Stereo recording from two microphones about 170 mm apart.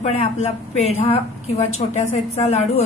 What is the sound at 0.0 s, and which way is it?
A woman's voice, 40° left (ahead or behind).